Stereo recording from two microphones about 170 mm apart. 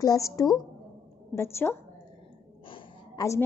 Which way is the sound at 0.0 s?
20° left (ahead or behind).